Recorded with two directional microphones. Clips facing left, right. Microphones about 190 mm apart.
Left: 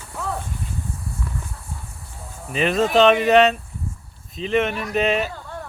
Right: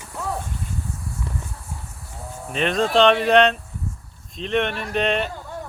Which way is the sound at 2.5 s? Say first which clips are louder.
Left 2 dB; 5° left (ahead or behind).